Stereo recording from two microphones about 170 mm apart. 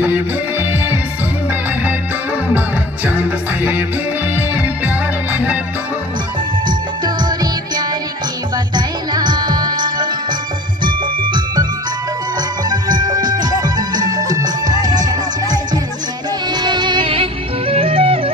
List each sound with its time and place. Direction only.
0.0 s music: 10° right (ahead or behind)
3.1 s music: 10° right (ahead or behind)
8.7 s music: 25° right (ahead or behind)
12.6 s music: 25° right (ahead or behind)